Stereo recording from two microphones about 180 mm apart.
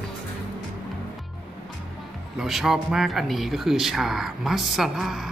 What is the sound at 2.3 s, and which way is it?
Speech, centre (ahead or behind).